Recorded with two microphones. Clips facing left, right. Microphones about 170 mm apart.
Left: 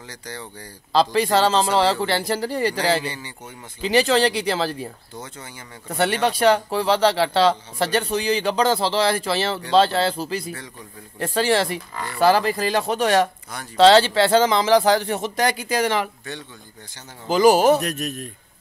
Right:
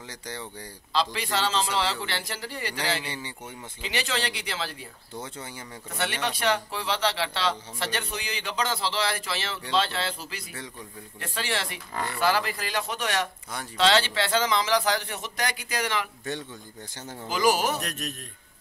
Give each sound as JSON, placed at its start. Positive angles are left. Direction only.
{"t": 0.1, "sound": "speech", "side_deg": -20}
{"t": 0.9, "sound": "speech", "side_deg": 40}
{"t": 5.9, "sound": "speech", "side_deg": 35}
{"t": 17.3, "sound": "a man's voice", "side_deg": 30}
{"t": 17.8, "sound": "a man's voice", "side_deg": 5}